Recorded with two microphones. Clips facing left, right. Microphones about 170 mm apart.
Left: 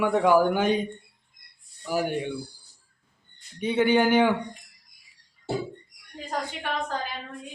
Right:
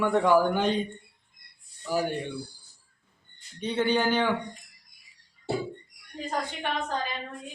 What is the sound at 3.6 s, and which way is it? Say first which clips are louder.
Speech: left 4 dB; 10° left (ahead or behind).